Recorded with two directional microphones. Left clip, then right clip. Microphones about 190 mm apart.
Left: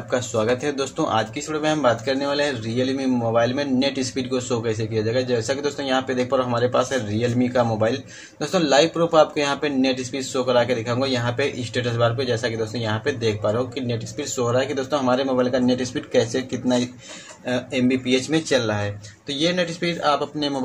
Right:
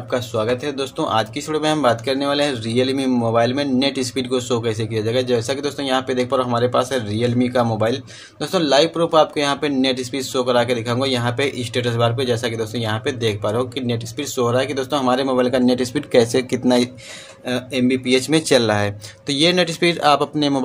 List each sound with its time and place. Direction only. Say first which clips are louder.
0.1 s speech: right 1 dB; 10° right (ahead or behind); by 16.9 s 35° right (ahead or behind)
17.5 s speech: right 2 dB; 20° right (ahead or behind)
18.5 s speech: right 7 dB; 40° right (ahead or behind)